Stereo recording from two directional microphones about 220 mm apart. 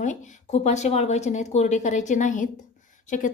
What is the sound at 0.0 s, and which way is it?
A woman's voice, 35° left (ahead or behind).